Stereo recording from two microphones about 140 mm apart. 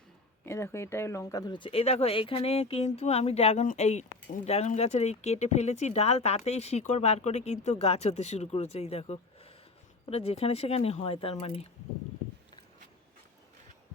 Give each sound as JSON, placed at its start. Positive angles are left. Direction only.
{"t": 0.4, "sound": "speech", "side_deg": 20}